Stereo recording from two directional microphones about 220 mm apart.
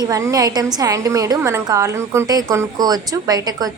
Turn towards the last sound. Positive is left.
turn(degrees=-15)  # may be behind; listen again after turning